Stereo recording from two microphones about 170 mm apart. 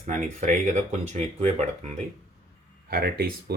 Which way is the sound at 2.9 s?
65° right (ahead or behind).